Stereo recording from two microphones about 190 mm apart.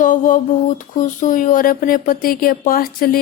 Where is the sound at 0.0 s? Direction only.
45° left (ahead or behind).